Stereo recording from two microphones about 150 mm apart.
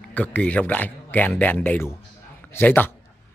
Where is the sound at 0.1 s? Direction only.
10° left (ahead or behind).